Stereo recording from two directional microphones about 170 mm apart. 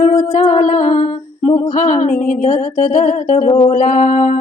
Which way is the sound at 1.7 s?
50° left (ahead or behind).